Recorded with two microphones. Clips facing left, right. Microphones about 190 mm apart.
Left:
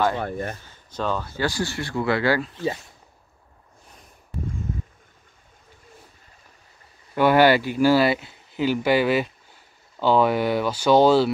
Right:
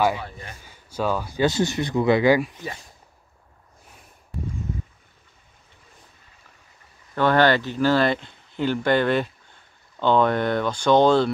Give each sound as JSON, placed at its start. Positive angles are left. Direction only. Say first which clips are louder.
{"t": 0.2, "sound": "speech", "louder": "left 10 dB", "side_deg": 55}
{"t": 0.6, "sound": "speech", "louder": "right 2 dB", "side_deg": -10}
{"t": 7.2, "sound": "speech", "louder": "left 2 dB", "side_deg": 10}